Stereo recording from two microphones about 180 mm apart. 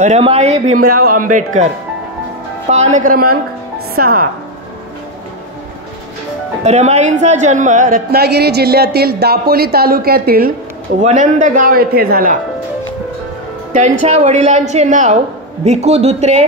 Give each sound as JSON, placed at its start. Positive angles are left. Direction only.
{"t": 0.0, "sound": "a woman's voice", "side_deg": -35}
{"t": 0.7, "sound": "a man's voice", "side_deg": -50}
{"t": 2.7, "sound": "a man's voice", "side_deg": -40}
{"t": 6.6, "sound": "a man's voice", "side_deg": -40}
{"t": 11.0, "sound": "a man's voice", "side_deg": -45}
{"t": 13.7, "sound": "a woman's voice", "side_deg": -40}